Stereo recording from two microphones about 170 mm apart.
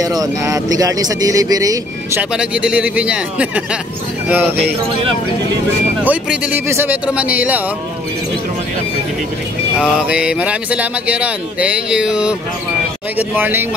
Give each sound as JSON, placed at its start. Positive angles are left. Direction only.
{"t": 0.0, "sound": "speech", "side_deg": -20}
{"t": 2.3, "sound": "speech", "side_deg": -5}
{"t": 6.0, "sound": "speech", "side_deg": -10}
{"t": 9.8, "sound": "speech", "side_deg": -5}